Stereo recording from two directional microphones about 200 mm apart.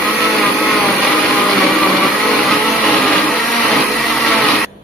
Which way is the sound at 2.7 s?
5° left (ahead or behind).